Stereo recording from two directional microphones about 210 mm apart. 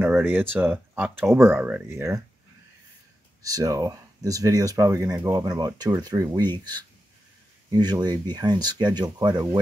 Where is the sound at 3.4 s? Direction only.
15° right (ahead or behind).